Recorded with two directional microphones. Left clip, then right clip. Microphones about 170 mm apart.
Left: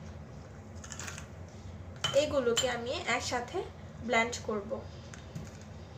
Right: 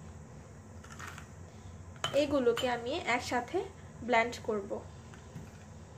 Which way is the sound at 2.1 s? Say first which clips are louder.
Left 1 dB; 50° right (ahead or behind).